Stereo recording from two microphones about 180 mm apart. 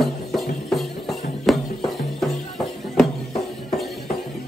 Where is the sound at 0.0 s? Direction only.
Centre (ahead or behind).